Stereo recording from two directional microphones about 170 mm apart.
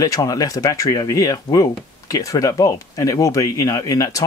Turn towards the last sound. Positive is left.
turn(degrees=20)  # may be behind; listen again after turning